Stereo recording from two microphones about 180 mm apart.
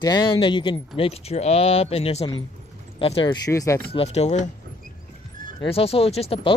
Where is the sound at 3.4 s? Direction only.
20° left (ahead or behind).